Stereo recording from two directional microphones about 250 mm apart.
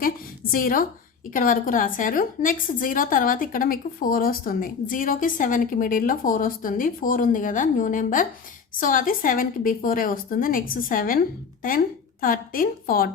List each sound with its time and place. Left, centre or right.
0.5 s a woman's voice: left
12.2 s a woman's voice: left